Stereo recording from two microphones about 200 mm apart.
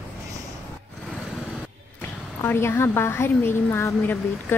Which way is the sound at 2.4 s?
10° left (ahead or behind).